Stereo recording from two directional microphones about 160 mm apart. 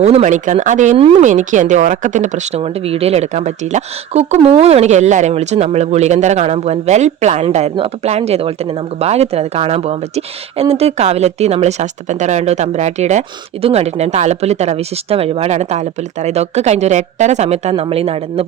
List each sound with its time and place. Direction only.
0.0 s speech: 45° right (ahead or behind)